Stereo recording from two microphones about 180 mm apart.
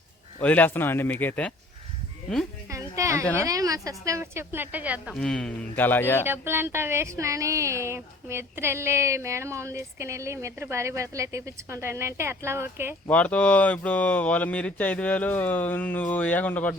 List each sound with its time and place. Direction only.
0.4 s speech: 10° left (ahead or behind)
2.6 s speech: 15° right (ahead or behind); by 6.2 s 10° left (ahead or behind)
6.2 s speech: 10° right (ahead or behind)
13.1 s speech: 5° left (ahead or behind)